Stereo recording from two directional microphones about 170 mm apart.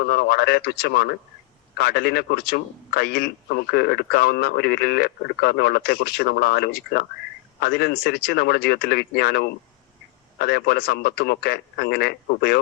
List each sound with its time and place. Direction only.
0.0 s a man's voice: 65° left (ahead or behind)